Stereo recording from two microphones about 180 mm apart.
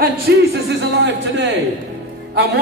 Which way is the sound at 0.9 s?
75° right (ahead or behind).